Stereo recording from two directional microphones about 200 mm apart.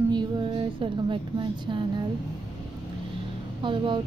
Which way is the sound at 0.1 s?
20° right (ahead or behind).